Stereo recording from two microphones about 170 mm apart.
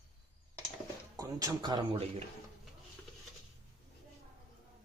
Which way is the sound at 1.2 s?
25° right (ahead or behind).